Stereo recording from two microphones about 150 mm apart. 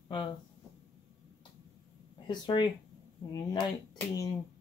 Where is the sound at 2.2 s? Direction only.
30° left (ahead or behind).